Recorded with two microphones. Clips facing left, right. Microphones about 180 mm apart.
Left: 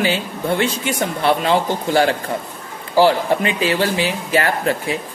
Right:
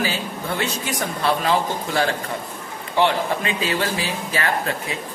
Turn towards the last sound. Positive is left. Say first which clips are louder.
# left 4 dB
turn(degrees=30)  # may be behind; listen again after turning